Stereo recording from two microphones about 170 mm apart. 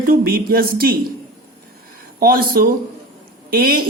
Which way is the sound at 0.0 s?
60° right (ahead or behind).